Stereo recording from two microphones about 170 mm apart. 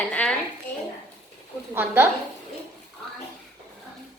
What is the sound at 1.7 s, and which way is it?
Speech, 10° right (ahead or behind).